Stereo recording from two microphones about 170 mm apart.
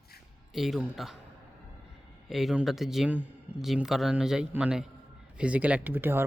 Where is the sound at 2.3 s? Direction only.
Centre (ahead or behind).